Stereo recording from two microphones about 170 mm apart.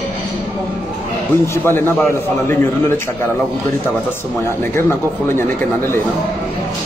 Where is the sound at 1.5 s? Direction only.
15° left (ahead or behind).